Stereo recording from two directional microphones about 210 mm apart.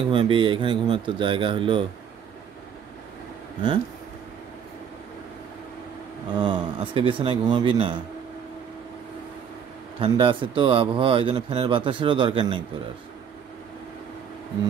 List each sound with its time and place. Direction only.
0.0 s speech: 25° right (ahead or behind)
6.3 s speech: 20° right (ahead or behind)
9.9 s speech: 25° right (ahead or behind)